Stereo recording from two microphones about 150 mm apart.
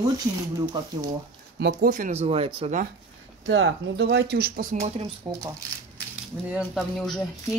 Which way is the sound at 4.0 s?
90° right.